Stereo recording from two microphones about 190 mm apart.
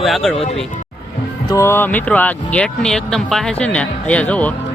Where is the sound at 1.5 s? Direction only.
15° left (ahead or behind).